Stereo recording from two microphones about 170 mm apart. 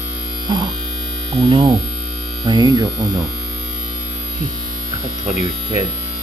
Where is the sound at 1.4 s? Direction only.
30° right (ahead or behind).